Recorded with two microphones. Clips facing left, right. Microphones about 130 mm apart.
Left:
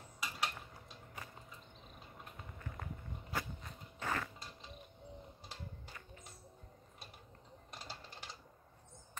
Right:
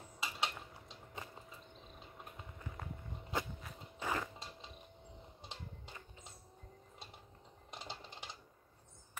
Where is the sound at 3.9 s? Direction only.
15° right (ahead or behind).